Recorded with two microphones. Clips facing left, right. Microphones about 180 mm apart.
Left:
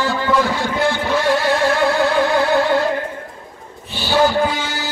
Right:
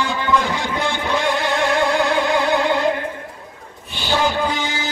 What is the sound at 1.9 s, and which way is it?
Music, 20° right (ahead or behind).